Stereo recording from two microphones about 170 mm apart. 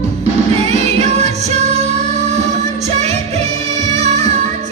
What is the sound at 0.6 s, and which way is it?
Music, 35° right (ahead or behind).